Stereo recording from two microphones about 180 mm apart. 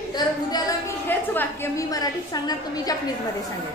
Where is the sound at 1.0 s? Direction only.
10° left (ahead or behind).